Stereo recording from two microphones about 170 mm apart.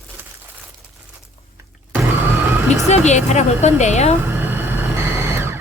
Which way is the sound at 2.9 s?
45° left (ahead or behind).